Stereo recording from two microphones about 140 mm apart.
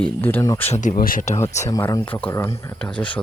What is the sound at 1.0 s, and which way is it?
Speech, 85° left.